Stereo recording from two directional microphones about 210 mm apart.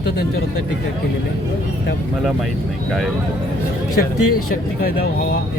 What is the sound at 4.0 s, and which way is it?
Speech, 45° left (ahead or behind).